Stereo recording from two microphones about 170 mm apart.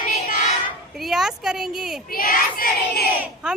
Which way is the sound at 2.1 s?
55° left (ahead or behind).